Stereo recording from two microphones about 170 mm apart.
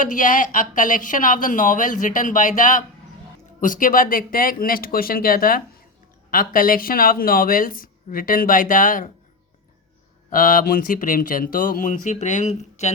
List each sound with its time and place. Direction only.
0.0 s speech: 50° left (ahead or behind)
10.2 s speech: 55° left (ahead or behind)